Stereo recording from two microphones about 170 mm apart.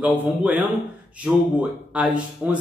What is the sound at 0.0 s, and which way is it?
A man's voice, 10° right (ahead or behind).